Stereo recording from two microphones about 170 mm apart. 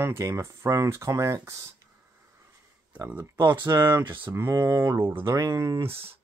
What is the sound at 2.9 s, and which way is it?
Speech, 10° right (ahead or behind).